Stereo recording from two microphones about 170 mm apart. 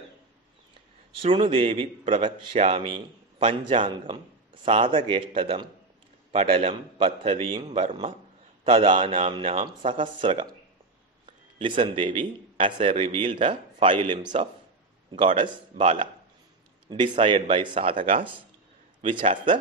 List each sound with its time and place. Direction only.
1.2 s a man's voice: 30° right (ahead or behind)
15.0 s speech: 30° right (ahead or behind)
17.2 s speech: 30° right (ahead or behind)
18.9 s a man's voice: 30° right (ahead or behind)